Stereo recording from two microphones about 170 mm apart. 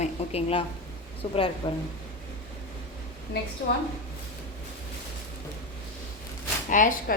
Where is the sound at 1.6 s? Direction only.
30° left (ahead or behind).